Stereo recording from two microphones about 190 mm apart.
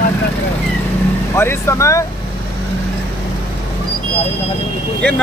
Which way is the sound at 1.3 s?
15° left (ahead or behind).